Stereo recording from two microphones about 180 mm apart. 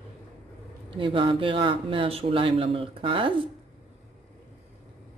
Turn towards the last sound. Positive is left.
turn(degrees=-30)  # may be behind; listen again after turning